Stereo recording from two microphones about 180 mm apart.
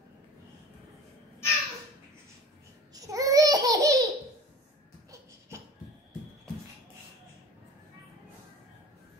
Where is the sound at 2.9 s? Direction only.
20° right (ahead or behind).